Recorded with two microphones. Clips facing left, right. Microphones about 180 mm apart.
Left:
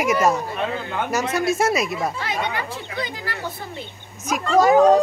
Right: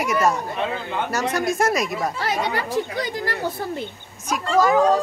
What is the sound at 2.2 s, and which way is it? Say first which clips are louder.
Speech: right 2 dB; 40° right (ahead or behind).